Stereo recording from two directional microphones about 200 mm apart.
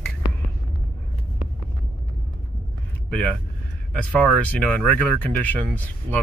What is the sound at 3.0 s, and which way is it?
Speech, 5° left (ahead or behind).